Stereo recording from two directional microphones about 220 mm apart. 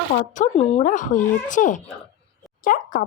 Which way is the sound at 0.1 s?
35° left (ahead or behind).